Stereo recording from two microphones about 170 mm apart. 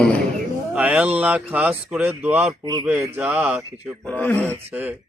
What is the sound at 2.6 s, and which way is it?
Speech, 25° right (ahead or behind).